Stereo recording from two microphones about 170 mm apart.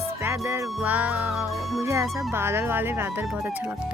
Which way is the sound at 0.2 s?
15° right (ahead or behind).